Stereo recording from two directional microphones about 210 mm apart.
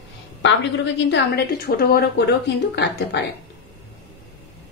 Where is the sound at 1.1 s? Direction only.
50° left (ahead or behind).